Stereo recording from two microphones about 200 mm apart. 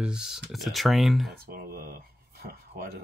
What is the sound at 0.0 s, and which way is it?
Speech, 5° right (ahead or behind).